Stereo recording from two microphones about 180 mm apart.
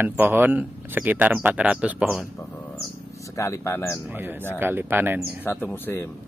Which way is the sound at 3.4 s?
15° left (ahead or behind).